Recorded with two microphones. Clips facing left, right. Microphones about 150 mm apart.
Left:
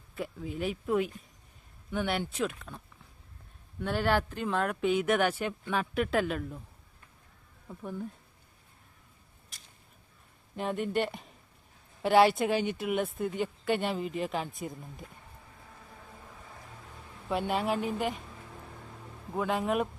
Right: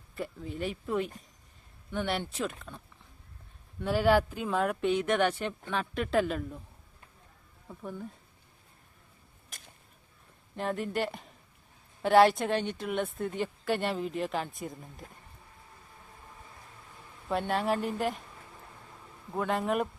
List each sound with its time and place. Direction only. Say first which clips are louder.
0.2 s a woman's voice: left 1 dB; centre (ahead or behind)
7.7 s a woman's voice: left 2 dB; 5° left (ahead or behind)
9.5 s a sound: right 5 dB; 50° right (ahead or behind)
10.6 s a woman's voice: left 1 dB; centre (ahead or behind)
17.2 s a woman's voice: right 1 dB; centre (ahead or behind)
19.4 s a woman's voice: even; centre (ahead or behind)